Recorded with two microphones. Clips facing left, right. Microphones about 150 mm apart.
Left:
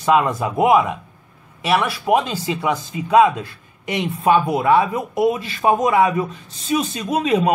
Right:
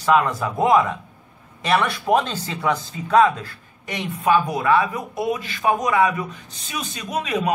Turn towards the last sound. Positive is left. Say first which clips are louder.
# left 6 dB
turn(degrees=30)  # may be behind; listen again after turning